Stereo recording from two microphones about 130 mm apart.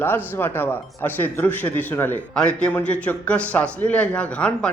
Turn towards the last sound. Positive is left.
turn(degrees=10)  # may be behind; listen again after turning